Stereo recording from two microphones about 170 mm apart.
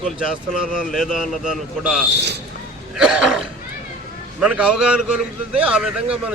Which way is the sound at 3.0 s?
5° right (ahead or behind).